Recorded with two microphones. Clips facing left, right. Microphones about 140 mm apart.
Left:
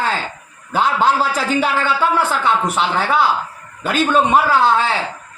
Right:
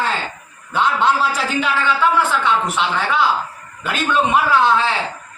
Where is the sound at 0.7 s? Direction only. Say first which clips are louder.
Left 1 dB; 40° left (ahead or behind).